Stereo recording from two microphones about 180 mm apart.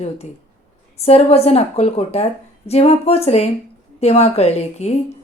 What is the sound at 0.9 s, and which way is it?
A woman's voice, 35° left (ahead or behind).